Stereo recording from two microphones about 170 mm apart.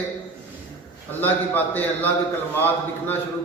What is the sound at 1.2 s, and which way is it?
Speech, 10° left (ahead or behind).